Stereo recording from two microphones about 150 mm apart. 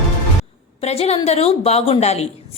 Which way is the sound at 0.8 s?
45° left (ahead or behind).